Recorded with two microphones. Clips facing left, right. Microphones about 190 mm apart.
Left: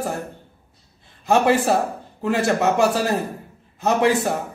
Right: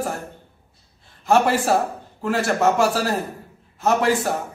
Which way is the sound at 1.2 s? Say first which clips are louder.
Left 1 dB; 15° left (ahead or behind).